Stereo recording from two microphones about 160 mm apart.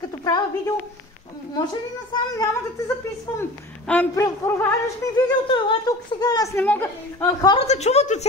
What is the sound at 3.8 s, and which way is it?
A man's voice, 10° left (ahead or behind).